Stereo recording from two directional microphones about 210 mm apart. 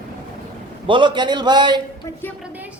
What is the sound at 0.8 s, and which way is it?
Speech, 25° right (ahead or behind).